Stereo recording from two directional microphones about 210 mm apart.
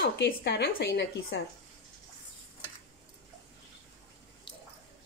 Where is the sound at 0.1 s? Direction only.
55° left (ahead or behind).